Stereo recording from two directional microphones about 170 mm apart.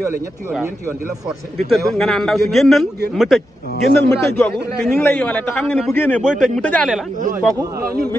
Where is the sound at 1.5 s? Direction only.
Centre (ahead or behind).